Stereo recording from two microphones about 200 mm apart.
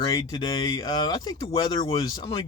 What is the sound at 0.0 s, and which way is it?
Speech, 20° left (ahead or behind).